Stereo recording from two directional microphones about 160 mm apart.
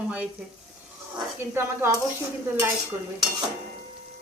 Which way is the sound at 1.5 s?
15° right (ahead or behind).